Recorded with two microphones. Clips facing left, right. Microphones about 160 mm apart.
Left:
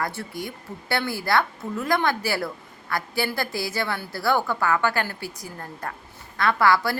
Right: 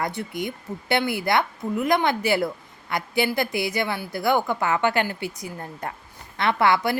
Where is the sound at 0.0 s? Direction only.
20° right (ahead or behind).